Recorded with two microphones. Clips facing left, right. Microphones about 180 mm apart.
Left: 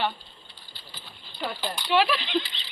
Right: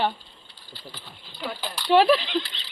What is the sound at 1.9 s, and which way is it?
Speech, 35° right (ahead or behind).